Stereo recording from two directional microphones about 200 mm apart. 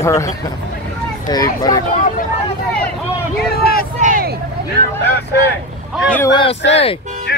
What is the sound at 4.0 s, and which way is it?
Speech, 45° right (ahead or behind).